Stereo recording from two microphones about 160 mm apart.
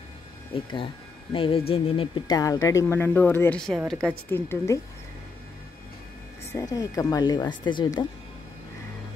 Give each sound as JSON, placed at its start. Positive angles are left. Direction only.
{"t": 0.6, "sound": "speech", "side_deg": 30}
{"t": 4.3, "sound": "speech", "side_deg": 15}
{"t": 6.5, "sound": "a woman's voice", "side_deg": 20}